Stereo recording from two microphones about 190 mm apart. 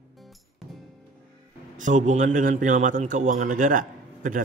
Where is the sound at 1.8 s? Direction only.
40° right (ahead or behind).